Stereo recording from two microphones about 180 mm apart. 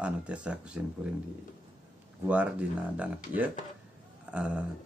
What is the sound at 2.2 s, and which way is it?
Speech, 10° right (ahead or behind).